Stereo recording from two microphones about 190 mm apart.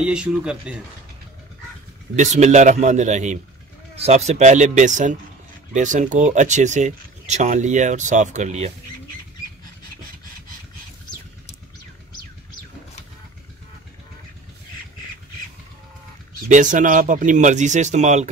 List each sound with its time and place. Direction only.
0.0 s speech: 5° right (ahead or behind)
2.1 s speech: 35° right (ahead or behind)
16.4 s speech: 40° right (ahead or behind)